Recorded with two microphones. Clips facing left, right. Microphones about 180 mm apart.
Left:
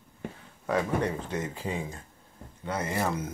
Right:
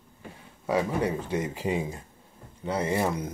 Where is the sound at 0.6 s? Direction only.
10° right (ahead or behind).